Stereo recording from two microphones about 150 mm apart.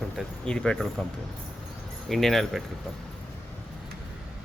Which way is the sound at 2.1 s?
Centre (ahead or behind).